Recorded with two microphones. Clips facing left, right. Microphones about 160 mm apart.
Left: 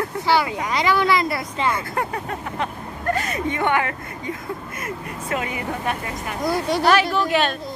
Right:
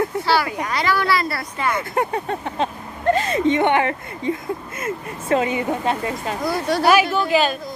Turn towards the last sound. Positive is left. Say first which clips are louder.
# right 2 dB
turn(degrees=0)  # may be behind; listen again after turning